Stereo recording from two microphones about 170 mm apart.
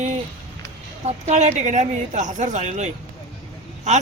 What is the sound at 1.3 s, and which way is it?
Speech, 40° right (ahead or behind).